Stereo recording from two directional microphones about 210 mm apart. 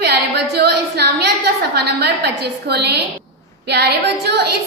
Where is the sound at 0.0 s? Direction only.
50° right (ahead or behind).